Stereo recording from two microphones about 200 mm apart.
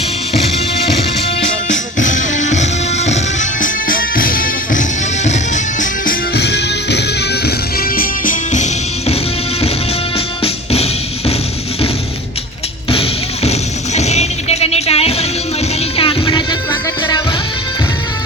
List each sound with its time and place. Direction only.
1.7 s music: 40° left (ahead or behind)
6.3 s music: 55° left (ahead or behind); by 9.1 s 35° left (ahead or behind)
10.2 s music: 30° left (ahead or behind)
12.9 s music: 30° left (ahead or behind)